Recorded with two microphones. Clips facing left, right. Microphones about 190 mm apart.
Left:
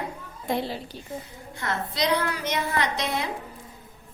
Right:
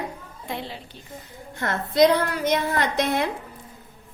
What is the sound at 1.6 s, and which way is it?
A woman's voice, 50° right (ahead or behind).